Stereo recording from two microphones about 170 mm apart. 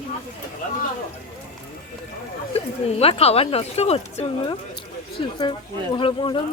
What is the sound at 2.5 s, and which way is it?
Speech, 35° left (ahead or behind).